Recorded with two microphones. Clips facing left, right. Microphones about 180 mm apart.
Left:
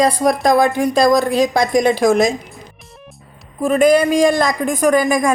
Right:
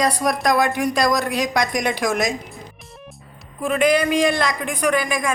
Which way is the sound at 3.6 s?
40° left (ahead or behind).